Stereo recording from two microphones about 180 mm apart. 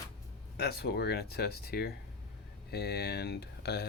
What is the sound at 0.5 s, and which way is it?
Speech, 65° left (ahead or behind).